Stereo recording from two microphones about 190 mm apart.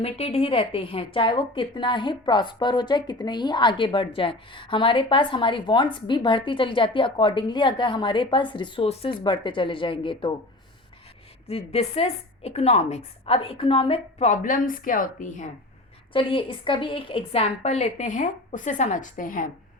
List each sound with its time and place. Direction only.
0.0 s a woman's voice: 30° left (ahead or behind)
11.4 s a woman's voice: 35° left (ahead or behind)
16.1 s a woman's voice: 25° left (ahead or behind); by 19.5 s 45° left (ahead or behind)